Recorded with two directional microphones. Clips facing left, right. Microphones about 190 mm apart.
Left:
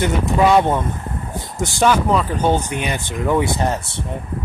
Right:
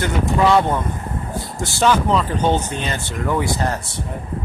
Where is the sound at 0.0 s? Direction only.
20° left (ahead or behind).